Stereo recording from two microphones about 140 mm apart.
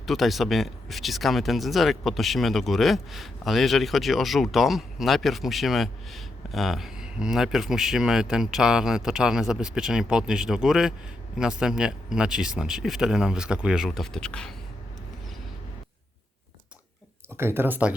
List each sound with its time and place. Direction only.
0.0 s speech: centre (ahead or behind)
17.3 s speech: 15° right (ahead or behind)